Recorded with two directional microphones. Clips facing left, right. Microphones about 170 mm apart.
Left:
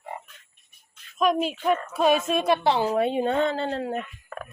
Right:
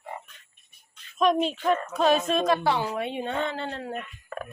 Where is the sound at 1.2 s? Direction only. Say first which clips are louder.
Even; 5° left (ahead or behind).